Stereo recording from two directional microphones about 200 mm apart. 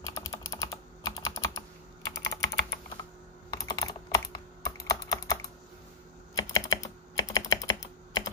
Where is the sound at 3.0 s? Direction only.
20° left (ahead or behind).